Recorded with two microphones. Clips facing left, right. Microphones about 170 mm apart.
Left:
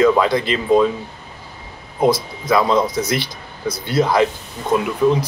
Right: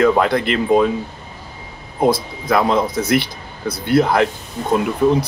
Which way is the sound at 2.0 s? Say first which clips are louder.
Even; 55° right (ahead or behind).